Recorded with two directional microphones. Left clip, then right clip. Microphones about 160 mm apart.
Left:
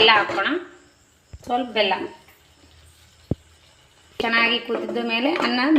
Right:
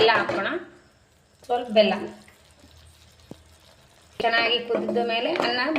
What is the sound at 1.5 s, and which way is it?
Speech, 55° left (ahead or behind).